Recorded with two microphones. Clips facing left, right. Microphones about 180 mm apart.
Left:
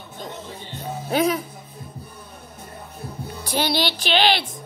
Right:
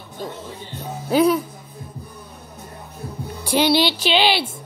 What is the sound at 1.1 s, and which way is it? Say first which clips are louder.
Speech: right 5 dB; 90° left.